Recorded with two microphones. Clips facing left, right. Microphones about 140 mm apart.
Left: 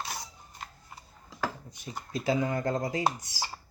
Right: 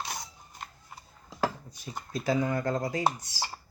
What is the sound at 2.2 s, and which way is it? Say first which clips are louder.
Speech: even; 25° left (ahead or behind).